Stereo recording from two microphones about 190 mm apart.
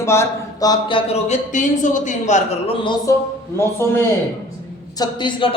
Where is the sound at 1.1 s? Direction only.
35° left (ahead or behind).